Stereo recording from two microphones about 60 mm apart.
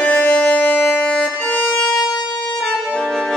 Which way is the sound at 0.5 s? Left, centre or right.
Left.